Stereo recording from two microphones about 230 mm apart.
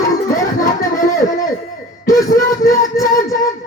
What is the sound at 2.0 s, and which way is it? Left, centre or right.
Music, centre.